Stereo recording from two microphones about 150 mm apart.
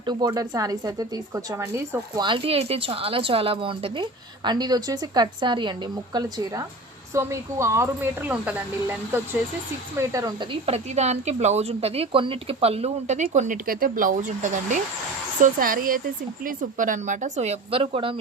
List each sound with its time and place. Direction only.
0.0 s a woman's voice: 25° right (ahead or behind)
2.2 s a woman's voice: 35° right (ahead or behind); by 9.2 s 10° right (ahead or behind)
10.0 s a woman's voice: 20° right (ahead or behind)
10.5 s a woman's voice: 45° right (ahead or behind)
13.2 s speech: 55° right (ahead or behind)
13.7 s speech: 70° right (ahead or behind)
15.4 s a woman's voice: 70° right (ahead or behind); by 18.2 s 35° right (ahead or behind)